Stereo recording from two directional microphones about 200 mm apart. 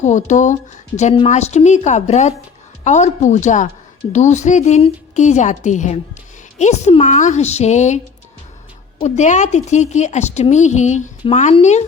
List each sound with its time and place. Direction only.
0.0 s a woman's voice: 35° left (ahead or behind)